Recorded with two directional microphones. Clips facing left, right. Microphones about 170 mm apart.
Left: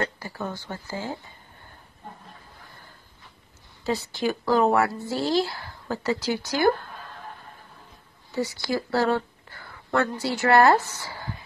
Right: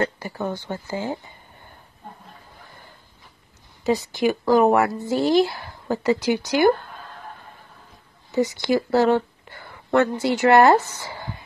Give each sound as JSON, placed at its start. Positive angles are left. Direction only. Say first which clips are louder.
{"t": 0.2, "sound": "speech", "louder": "right 5 dB", "side_deg": -20}
{"t": 3.8, "sound": "speech", "louder": "right 5 dB", "side_deg": -15}
{"t": 8.3, "sound": "speech", "louder": "right 6 dB", "side_deg": -20}